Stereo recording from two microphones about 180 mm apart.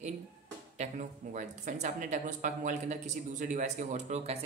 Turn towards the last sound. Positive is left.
turn(degrees=-40)  # may be behind; listen again after turning